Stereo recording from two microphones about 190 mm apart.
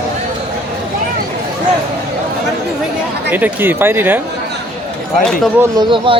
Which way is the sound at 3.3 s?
10° right (ahead or behind).